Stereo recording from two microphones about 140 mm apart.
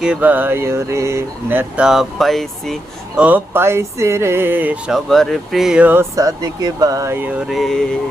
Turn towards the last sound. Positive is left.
turn(degrees=5)  # may be behind; listen again after turning